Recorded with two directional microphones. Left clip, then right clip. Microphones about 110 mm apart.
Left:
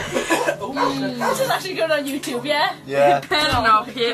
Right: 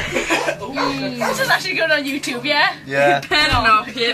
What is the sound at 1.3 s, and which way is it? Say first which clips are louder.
A woman's voice: right 3 dB; 45° left (ahead or behind).